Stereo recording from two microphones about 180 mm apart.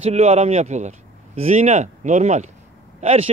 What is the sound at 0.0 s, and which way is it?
Speech, 35° right (ahead or behind).